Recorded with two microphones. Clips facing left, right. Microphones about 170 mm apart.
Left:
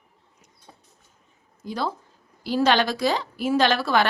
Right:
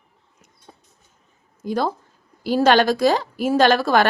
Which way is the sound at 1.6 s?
50° right (ahead or behind).